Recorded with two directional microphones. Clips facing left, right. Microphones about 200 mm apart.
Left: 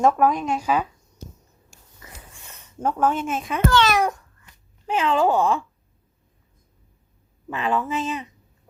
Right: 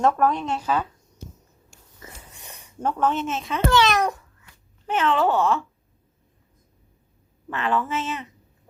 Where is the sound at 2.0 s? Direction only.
20° right (ahead or behind).